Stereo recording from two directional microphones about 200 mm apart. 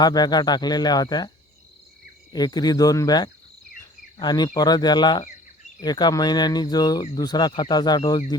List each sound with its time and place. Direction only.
0.0 s speech: 20° left (ahead or behind)
2.3 s speech: 20° left (ahead or behind)